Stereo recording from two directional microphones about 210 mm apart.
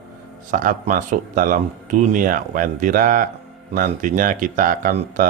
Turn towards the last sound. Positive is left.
turn(degrees=-40)  # may be behind; listen again after turning